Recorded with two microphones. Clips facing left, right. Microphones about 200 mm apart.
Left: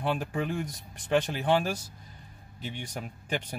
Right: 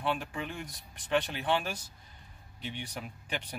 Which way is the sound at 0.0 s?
40° left (ahead or behind).